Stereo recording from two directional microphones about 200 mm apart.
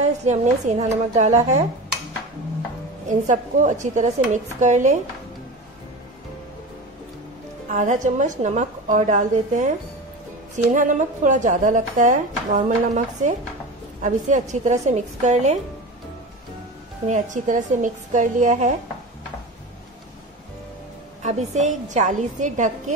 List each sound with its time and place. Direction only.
0.0 s a woman's voice: 35° right (ahead or behind)
3.1 s a woman's voice: 40° right (ahead or behind)
7.7 s a woman's voice: 40° right (ahead or behind)
14.5 s a woman's voice: 35° right (ahead or behind)
17.1 s a woman's voice: 40° right (ahead or behind)
21.2 s a woman's voice: 35° right (ahead or behind)